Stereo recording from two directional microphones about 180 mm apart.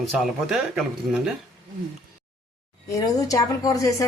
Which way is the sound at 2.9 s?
20° left (ahead or behind).